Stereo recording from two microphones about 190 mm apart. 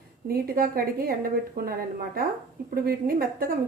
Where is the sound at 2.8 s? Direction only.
50° right (ahead or behind).